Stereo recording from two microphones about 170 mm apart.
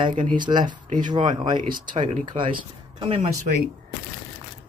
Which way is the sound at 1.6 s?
55° right (ahead or behind).